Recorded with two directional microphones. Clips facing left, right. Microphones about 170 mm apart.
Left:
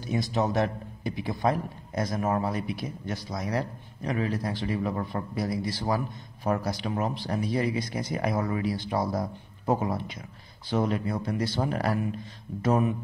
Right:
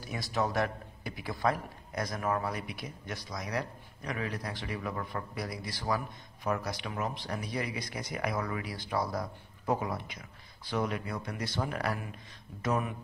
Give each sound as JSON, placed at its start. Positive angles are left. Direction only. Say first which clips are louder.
{"t": 0.0, "sound": "a man's voice", "louder": "left 5 dB", "side_deg": 20}